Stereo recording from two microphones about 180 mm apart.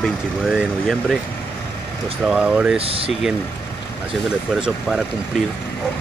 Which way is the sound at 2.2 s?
5° right (ahead or behind).